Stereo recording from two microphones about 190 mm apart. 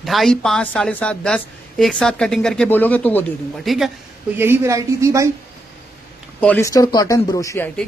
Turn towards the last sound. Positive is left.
turn(degrees=15)  # may be behind; listen again after turning